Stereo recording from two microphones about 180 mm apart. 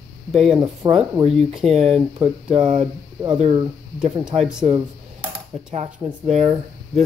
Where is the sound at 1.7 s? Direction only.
35° right (ahead or behind).